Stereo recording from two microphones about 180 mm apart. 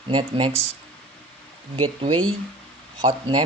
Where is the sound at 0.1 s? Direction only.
25° right (ahead or behind).